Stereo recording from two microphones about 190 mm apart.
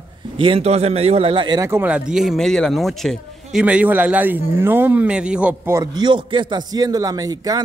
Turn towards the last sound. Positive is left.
turn(degrees=-20)  # may be behind; listen again after turning